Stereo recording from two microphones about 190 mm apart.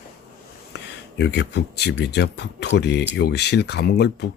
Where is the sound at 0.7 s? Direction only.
65° left (ahead or behind).